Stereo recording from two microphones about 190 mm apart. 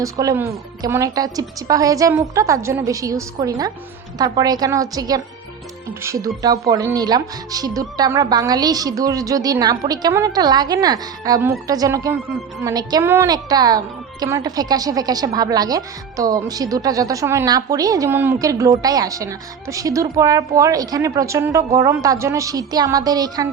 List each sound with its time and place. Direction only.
0.0 s a woman's voice: 15° right (ahead or behind)